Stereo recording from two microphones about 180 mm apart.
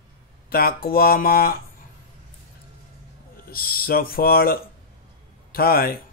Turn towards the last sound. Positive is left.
turn(degrees=55)  # may be behind; listen again after turning